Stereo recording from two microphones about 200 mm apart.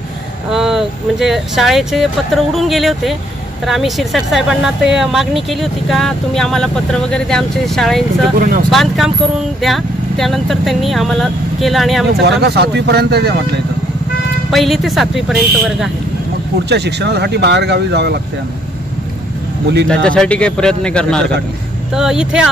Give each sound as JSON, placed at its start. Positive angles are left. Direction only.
{"t": 0.5, "sound": "speech", "side_deg": 0}
{"t": 8.4, "sound": "speech", "side_deg": -45}
{"t": 8.6, "sound": "speech", "side_deg": 0}
{"t": 12.2, "sound": "speech", "side_deg": -55}
{"t": 14.5, "sound": "speech", "side_deg": 0}
{"t": 16.6, "sound": "speech", "side_deg": -60}
{"t": 19.6, "sound": "speech", "side_deg": -55}
{"t": 19.9, "sound": "speech", "side_deg": 5}